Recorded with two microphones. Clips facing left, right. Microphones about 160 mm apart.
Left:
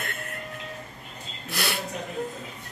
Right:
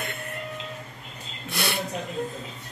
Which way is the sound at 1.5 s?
Centre (ahead or behind).